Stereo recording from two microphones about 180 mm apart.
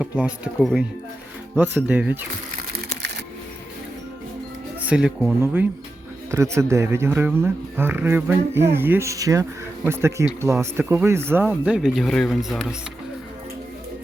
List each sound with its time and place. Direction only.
0.0 s speech: 5° right (ahead or behind)
2.7 s a sound: 70° right (ahead or behind)
4.8 s speech: 5° right (ahead or behind)
6.3 s speech: 15° right (ahead or behind)